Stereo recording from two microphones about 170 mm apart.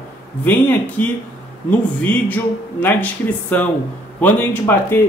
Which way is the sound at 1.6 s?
10° left (ahead or behind).